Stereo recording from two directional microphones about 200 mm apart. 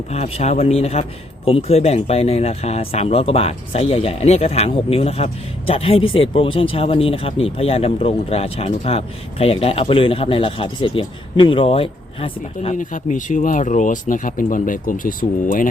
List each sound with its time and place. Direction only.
0.1 s speech: 35° left (ahead or behind)
12.7 s speech: 40° left (ahead or behind)